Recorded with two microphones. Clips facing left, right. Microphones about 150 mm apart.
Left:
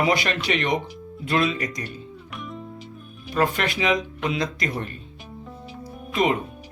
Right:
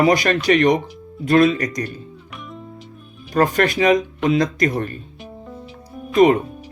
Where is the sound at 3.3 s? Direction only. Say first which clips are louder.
Right 6 dB; 45° right (ahead or behind).